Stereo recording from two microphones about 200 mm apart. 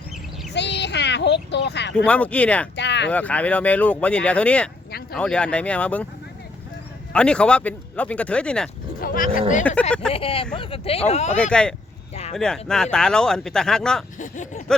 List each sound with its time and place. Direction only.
0.5 s a sound: 60° left (ahead or behind)
2.0 s speech: 5° left (ahead or behind)
2.7 s a sound: 60° left (ahead or behind)
3.1 s speech: 5° left (ahead or behind)
7.1 s speech: 5° left (ahead or behind)
9.0 s speech: 45° left (ahead or behind)
10.1 s speech: 30° left (ahead or behind)
11.3 s speech: 5° left (ahead or behind)
14.2 s a sound: 40° left (ahead or behind)